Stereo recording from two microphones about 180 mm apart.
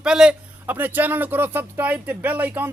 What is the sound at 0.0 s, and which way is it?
Speech, 5° right (ahead or behind).